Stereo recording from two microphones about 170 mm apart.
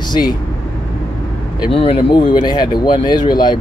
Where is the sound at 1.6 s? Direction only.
30° left (ahead or behind).